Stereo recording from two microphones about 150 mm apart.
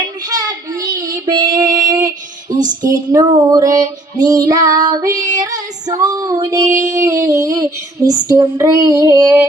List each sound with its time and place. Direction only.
0.3 s child singing: 25° right (ahead or behind)
2.5 s a sound: 25° right (ahead or behind)
2.9 s female singing: 25° right (ahead or behind)